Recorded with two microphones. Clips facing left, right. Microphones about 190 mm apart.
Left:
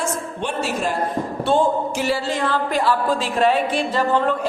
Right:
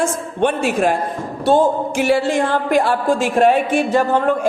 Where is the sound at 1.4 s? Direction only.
40° right (ahead or behind).